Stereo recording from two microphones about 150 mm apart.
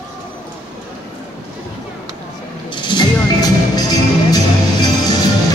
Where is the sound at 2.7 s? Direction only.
30° left (ahead or behind).